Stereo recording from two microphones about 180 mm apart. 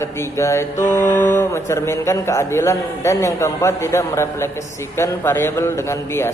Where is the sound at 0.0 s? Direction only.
15° left (ahead or behind).